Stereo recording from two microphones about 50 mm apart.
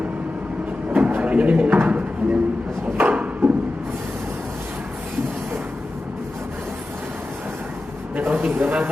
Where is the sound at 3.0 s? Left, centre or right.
Right.